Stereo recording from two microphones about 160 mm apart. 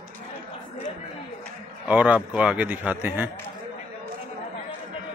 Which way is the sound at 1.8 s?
10° right (ahead or behind).